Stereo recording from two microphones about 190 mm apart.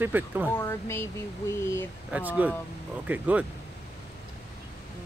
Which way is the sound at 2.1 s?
10° right (ahead or behind).